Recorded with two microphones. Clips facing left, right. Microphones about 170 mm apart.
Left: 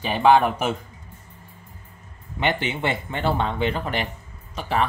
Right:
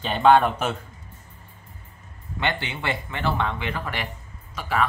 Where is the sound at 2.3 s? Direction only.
20° left (ahead or behind).